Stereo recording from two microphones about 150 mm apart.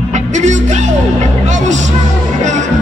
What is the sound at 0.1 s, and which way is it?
Music, 50° right (ahead or behind).